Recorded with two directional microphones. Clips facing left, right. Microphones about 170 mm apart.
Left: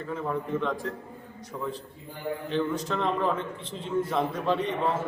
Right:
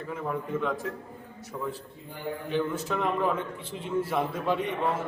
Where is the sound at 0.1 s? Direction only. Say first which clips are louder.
Left 2 dB; 10° right (ahead or behind).